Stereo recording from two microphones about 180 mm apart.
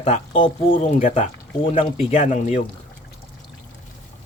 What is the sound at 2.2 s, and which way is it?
Speech, 40° left (ahead or behind).